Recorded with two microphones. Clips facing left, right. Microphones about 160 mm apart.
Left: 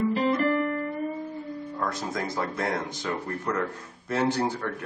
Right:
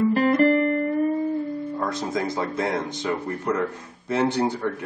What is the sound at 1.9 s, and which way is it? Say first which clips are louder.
Speech: right 4 dB; 20° right (ahead or behind).